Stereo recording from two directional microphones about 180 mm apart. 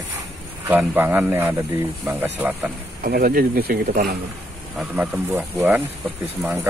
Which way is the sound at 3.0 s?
55° right (ahead or behind).